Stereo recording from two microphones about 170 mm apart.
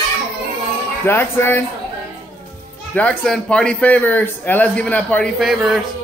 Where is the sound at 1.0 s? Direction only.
15° left (ahead or behind).